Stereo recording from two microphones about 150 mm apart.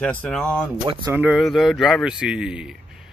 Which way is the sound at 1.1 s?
10° right (ahead or behind).